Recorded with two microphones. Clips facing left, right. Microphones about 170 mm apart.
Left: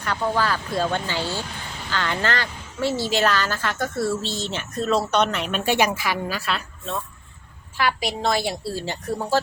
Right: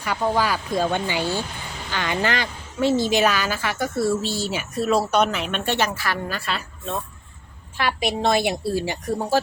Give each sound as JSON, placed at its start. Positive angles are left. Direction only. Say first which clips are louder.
{"t": 0.0, "sound": "a woman's voice", "louder": "right 1 dB", "side_deg": -10}
{"t": 7.8, "sound": "a woman's voice", "louder": "right 1 dB", "side_deg": -25}